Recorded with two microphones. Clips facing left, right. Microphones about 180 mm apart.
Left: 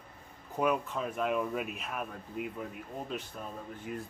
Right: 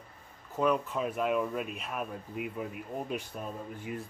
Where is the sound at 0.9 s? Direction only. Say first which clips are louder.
Right 2 dB; 5° right (ahead or behind).